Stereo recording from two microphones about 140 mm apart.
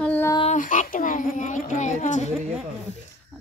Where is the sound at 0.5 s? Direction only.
65° left (ahead or behind).